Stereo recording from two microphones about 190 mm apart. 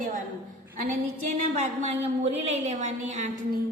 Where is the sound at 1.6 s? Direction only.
35° right (ahead or behind).